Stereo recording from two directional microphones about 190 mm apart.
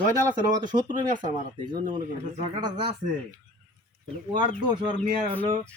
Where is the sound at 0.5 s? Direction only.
20° right (ahead or behind).